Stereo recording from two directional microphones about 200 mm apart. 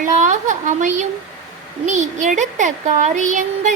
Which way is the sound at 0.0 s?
40° right (ahead or behind).